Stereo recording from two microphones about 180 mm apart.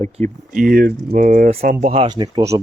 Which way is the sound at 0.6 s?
55° right (ahead or behind).